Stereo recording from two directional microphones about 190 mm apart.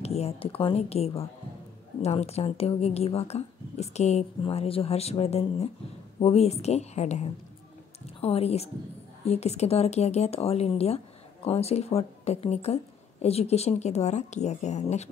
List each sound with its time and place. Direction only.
0.0 s speech: 35° left (ahead or behind)